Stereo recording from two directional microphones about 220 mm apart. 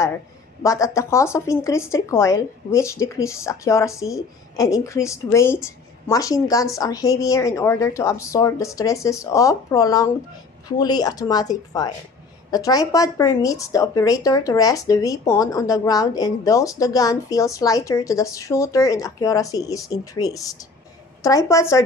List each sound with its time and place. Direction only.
0.6 s speech: 15° left (ahead or behind)